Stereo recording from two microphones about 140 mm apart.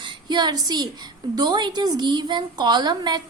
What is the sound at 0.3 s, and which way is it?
A woman's voice, 30° right (ahead or behind).